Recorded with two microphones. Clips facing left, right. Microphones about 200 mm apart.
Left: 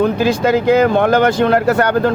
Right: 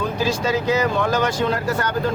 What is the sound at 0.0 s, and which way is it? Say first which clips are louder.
Speech: left 8 dB; 60° left (ahead or behind).